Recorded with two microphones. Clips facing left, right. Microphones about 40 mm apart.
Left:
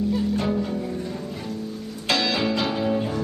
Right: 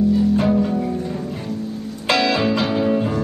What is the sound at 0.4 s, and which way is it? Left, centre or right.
Music, centre.